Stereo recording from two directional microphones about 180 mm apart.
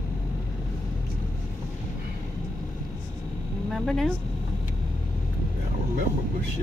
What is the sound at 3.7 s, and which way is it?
Speech, centre (ahead or behind).